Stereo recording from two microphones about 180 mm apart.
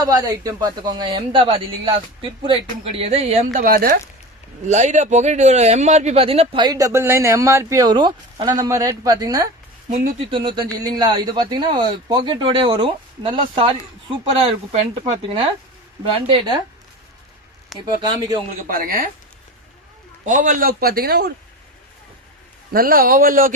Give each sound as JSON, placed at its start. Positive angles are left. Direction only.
{"t": 0.0, "sound": "a man's voice", "side_deg": -20}
{"t": 3.6, "sound": "a man's voice", "side_deg": -55}
{"t": 4.6, "sound": "a man's voice", "side_deg": -40}
{"t": 17.7, "sound": "speech", "side_deg": 0}
{"t": 18.2, "sound": "a man's voice", "side_deg": -25}
{"t": 18.7, "sound": "a man's voice", "side_deg": -50}
{"t": 20.2, "sound": "a man's voice", "side_deg": -45}
{"t": 22.7, "sound": "a man's voice", "side_deg": -55}